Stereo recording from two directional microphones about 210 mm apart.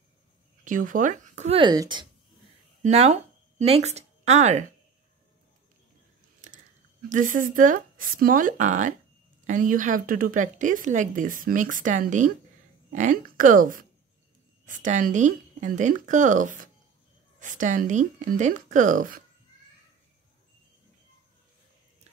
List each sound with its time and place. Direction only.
0.7 s speech: 40° right (ahead or behind); by 2.0 s 20° right (ahead or behind)
2.8 s speech: 30° right (ahead or behind)
6.4 s chewing: 40° right (ahead or behind)
7.1 s speech: 40° right (ahead or behind)